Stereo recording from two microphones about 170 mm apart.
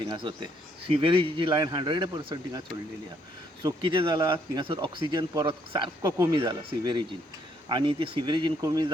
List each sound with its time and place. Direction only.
0.0 s speech: 30° right (ahead or behind)